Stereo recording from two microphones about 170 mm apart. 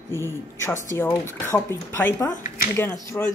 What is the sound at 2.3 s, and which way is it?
Speech, 55° left (ahead or behind).